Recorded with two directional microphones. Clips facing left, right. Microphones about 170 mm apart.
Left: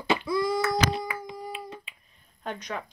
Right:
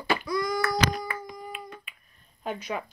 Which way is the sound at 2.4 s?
5° right (ahead or behind).